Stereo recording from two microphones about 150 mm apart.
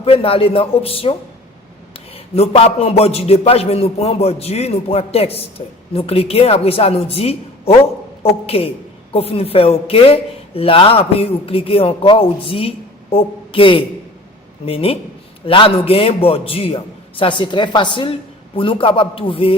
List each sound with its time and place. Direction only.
0.0 s a man's voice: 40° left (ahead or behind)
2.1 s a man's voice: 40° left (ahead or behind)